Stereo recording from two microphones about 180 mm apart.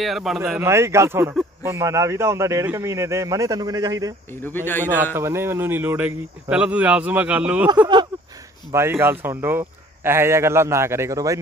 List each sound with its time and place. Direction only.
0.0 s speech: centre (ahead or behind)
0.5 s speech: 15° right (ahead or behind)
4.4 s a man's voice: 10° left (ahead or behind)
5.1 s speech: 15° right (ahead or behind)
8.7 s speech: 15° right (ahead or behind)